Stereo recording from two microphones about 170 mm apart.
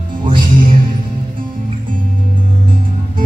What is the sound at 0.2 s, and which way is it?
Music, 30° right (ahead or behind).